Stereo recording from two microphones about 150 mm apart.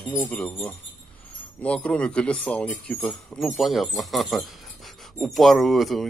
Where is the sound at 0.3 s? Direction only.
10° left (ahead or behind).